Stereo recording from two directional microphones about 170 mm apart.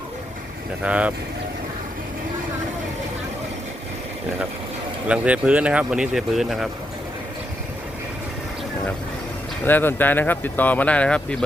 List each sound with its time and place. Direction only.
0.8 s speech: 5° right (ahead or behind)
5.0 s speech: 5° right (ahead or behind)
9.6 s speech: 10° left (ahead or behind)